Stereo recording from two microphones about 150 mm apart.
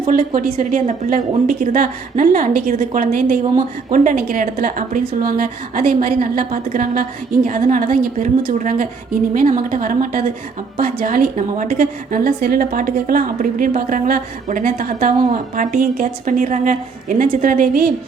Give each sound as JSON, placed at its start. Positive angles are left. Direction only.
{"t": 0.1, "sound": "a woman's voice", "side_deg": -60}